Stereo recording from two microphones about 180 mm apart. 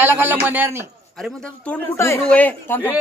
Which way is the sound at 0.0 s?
10° right (ahead or behind).